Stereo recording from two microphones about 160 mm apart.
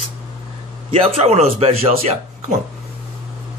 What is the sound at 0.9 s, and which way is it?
Speech, 35° right (ahead or behind).